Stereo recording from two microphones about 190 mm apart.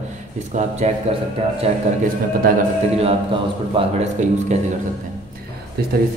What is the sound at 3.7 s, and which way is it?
Speech, 35° right (ahead or behind).